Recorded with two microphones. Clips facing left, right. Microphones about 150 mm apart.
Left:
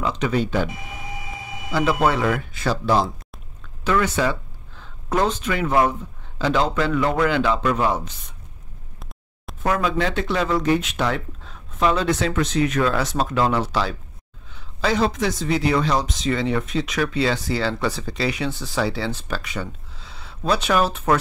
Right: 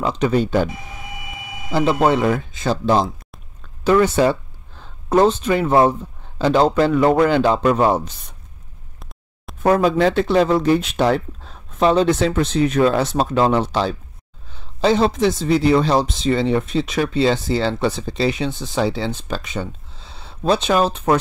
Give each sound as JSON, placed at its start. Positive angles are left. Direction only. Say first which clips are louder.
{"t": 0.0, "sound": "speech", "louder": "right 4 dB", "side_deg": -35}
{"t": 1.7, "sound": "speech", "louder": "right 4 dB", "side_deg": -30}
{"t": 9.6, "sound": "speech", "louder": "right 6 dB", "side_deg": -35}